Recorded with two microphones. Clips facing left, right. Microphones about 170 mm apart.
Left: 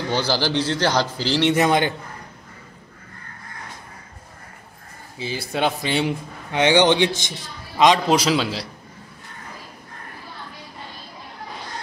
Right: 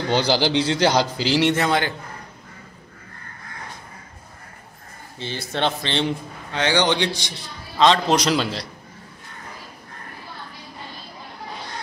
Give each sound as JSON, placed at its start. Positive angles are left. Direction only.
{"t": 0.1, "sound": "a man's voice", "side_deg": -15}
{"t": 1.5, "sound": "a man's voice", "side_deg": 15}
{"t": 5.2, "sound": "a man's voice", "side_deg": 5}